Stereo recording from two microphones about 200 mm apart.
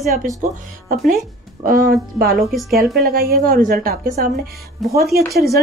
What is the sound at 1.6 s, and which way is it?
Speech, 45° right (ahead or behind).